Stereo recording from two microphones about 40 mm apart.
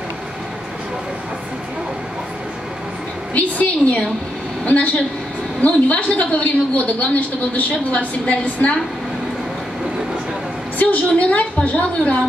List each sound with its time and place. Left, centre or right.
3.3 s a woman's voice: left
10.8 s a woman's voice: left